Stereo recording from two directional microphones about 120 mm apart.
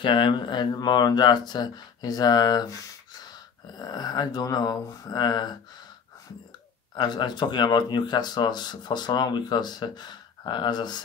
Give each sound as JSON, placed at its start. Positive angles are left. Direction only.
{"t": 0.0, "sound": "speech", "side_deg": 45}
{"t": 7.0, "sound": "speech", "side_deg": 40}